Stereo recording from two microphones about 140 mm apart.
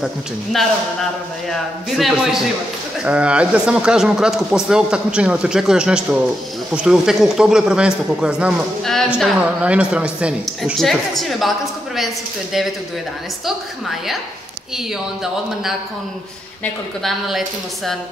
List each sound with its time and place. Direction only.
0.0 s a man's voice: centre (ahead or behind)
13.5 s a man's voice: centre (ahead or behind)
17.0 s a man's voice: centre (ahead or behind)